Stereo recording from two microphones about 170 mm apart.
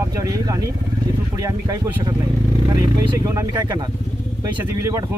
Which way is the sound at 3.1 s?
15° right (ahead or behind).